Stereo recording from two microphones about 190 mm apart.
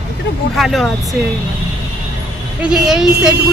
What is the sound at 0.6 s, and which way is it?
Speech, centre (ahead or behind).